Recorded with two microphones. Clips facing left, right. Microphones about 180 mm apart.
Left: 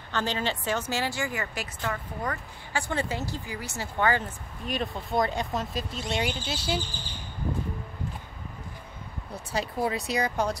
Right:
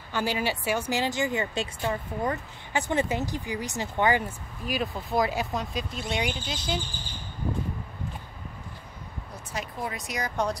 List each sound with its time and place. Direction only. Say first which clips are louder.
0.1 s a woman's voice: right 1 dB; 10° right (ahead or behind)
4.6 s speech: right 1 dB; centre (ahead or behind)
9.5 s speech: left 6 dB; 30° left (ahead or behind)
10.3 s speech: even; centre (ahead or behind)